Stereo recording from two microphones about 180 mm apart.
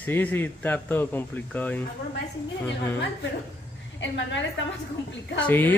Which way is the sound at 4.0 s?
85° left.